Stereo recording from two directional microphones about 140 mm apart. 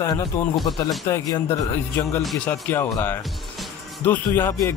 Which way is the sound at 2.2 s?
Centre (ahead or behind).